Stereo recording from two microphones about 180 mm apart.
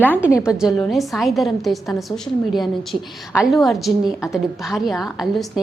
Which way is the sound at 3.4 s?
Centre (ahead or behind).